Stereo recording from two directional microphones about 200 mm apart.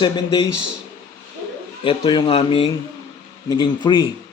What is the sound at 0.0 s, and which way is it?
Speech, 20° left (ahead or behind).